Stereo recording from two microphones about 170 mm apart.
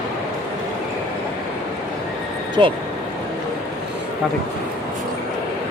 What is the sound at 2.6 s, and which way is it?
Speech, 25° right (ahead or behind).